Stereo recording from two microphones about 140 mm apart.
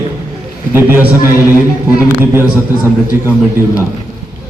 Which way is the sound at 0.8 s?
15° right (ahead or behind).